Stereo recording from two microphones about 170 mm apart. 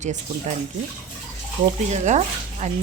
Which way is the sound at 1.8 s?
45° right (ahead or behind).